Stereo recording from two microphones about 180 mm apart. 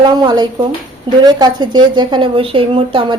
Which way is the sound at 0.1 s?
25° right (ahead or behind).